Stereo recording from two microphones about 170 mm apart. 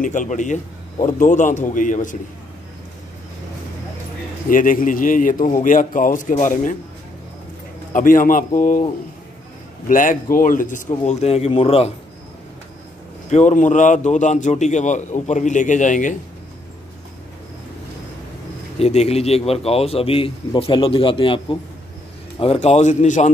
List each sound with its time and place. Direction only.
0.0 s a man's voice: 50° left (ahead or behind)
4.5 s a man's voice: 55° left (ahead or behind)
7.9 s a man's voice: 50° left (ahead or behind)
9.8 s a man's voice: 50° left (ahead or behind)
11.1 s speech: 40° left (ahead or behind)
13.3 s a man's voice: 45° left (ahead or behind)
18.8 s a man's voice: 40° left (ahead or behind)